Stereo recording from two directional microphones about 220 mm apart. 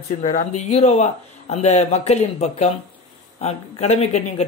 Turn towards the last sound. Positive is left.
turn(degrees=30)  # may be behind; listen again after turning